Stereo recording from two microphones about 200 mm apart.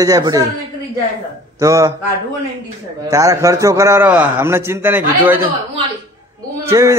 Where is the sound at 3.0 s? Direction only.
15° right (ahead or behind).